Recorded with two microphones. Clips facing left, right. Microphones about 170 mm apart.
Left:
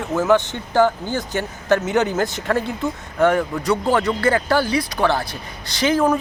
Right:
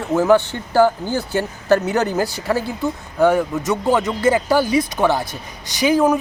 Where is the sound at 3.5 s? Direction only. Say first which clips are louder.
Right 1 dB; 20° right (ahead or behind).